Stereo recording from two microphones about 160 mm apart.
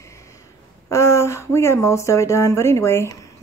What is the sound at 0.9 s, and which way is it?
Speech, 15° left (ahead or behind).